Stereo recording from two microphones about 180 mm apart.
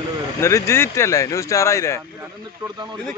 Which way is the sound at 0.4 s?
15° left (ahead or behind).